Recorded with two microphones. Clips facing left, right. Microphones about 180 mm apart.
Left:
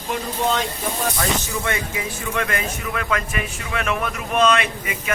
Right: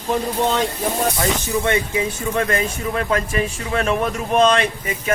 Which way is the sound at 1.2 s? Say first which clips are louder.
Right 4 dB; 20° right (ahead or behind).